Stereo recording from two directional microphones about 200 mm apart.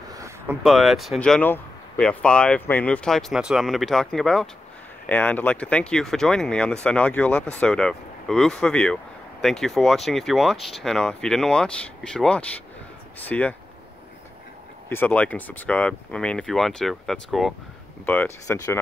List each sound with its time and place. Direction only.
0.1 s a sound: 15° right (ahead or behind)
0.7 s speech: centre (ahead or behind)
14.9 s speech: 10° left (ahead or behind)